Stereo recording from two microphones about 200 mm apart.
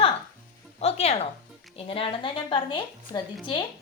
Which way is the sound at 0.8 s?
30° left (ahead or behind).